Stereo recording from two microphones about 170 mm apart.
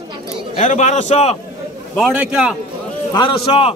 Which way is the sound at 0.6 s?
45° left (ahead or behind).